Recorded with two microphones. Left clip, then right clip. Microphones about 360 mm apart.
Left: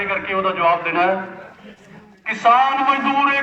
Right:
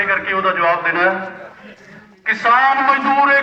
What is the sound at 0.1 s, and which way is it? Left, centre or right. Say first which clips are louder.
A man's voice: right 4 dB; centre.